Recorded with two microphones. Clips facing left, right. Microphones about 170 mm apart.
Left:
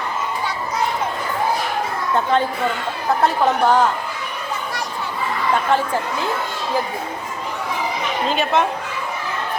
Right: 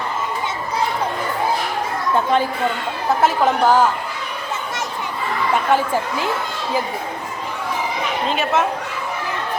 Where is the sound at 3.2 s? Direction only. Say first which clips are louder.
Right 1 dB; 5° right (ahead or behind).